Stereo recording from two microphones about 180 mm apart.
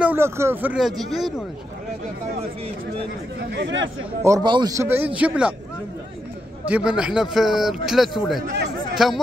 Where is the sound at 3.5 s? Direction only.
80° right.